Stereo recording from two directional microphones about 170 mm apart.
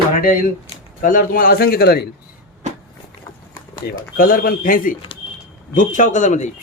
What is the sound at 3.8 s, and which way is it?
A man's voice, 65° left (ahead or behind).